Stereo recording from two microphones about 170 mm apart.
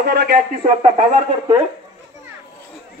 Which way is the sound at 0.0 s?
70° right (ahead or behind).